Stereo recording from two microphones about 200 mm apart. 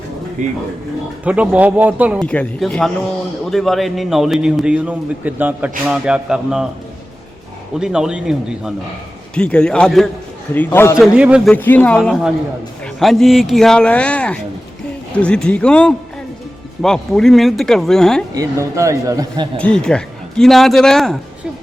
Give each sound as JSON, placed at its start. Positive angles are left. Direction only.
{"t": 0.4, "sound": "speech", "side_deg": -40}
{"t": 1.2, "sound": "speech", "side_deg": -5}
{"t": 2.2, "sound": "a man's voice", "side_deg": 5}
{"t": 7.8, "sound": "a man's voice", "side_deg": -5}
{"t": 11.0, "sound": "a man's voice", "side_deg": -5}
{"t": 11.5, "sound": "a man's voice", "side_deg": 10}
{"t": 18.3, "sound": "speech", "side_deg": -15}
{"t": 19.5, "sound": "a man's voice", "side_deg": 5}